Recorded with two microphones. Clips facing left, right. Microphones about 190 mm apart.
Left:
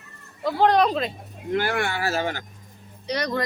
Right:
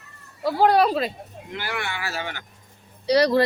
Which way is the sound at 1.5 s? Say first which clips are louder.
Left 7 dB; 50° left (ahead or behind).